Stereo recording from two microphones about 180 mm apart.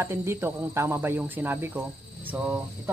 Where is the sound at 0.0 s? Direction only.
15° right (ahead or behind).